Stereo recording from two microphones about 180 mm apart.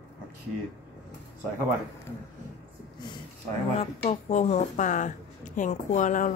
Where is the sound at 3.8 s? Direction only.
35° left (ahead or behind).